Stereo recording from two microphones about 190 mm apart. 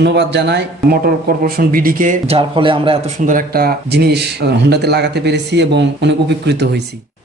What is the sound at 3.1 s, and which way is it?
Speech, 45° right (ahead or behind).